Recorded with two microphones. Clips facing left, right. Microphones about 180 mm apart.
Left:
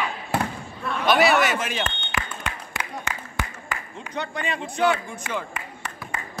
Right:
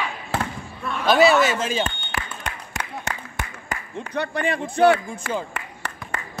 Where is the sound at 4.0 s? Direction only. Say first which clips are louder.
Right 6 dB; 60° right (ahead or behind).